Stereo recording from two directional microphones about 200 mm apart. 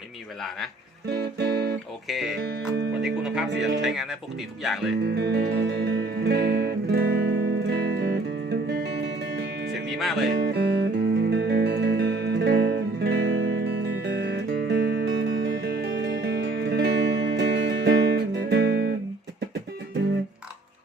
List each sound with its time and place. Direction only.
1.1 s music: 55° right (ahead or behind)
2.0 s speech: centre (ahead or behind)
2.5 s speech: 55° right (ahead or behind)
3.0 s speech: 5° right (ahead or behind)
5.0 s music: 55° right (ahead or behind)
10.0 s speech: centre (ahead or behind)
10.3 s music: 55° right (ahead or behind)